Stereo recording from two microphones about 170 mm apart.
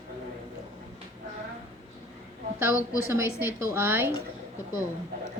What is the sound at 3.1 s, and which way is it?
A woman's voice, 15° right (ahead or behind).